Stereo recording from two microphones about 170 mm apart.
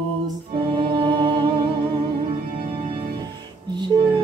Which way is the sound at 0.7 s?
30° right (ahead or behind).